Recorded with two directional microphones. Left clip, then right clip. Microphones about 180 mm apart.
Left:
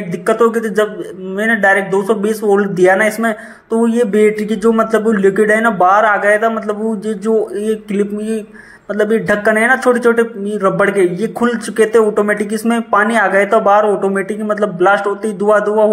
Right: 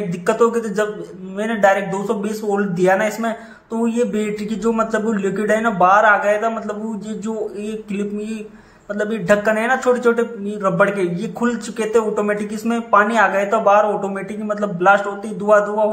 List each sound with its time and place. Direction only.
0.3 s a man's voice: 20° left (ahead or behind)